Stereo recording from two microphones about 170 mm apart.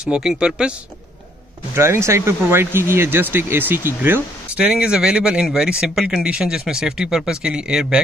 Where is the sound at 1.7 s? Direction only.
15° right (ahead or behind).